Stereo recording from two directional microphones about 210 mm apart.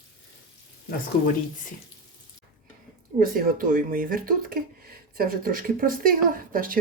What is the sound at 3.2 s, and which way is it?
Speech, 40° right (ahead or behind).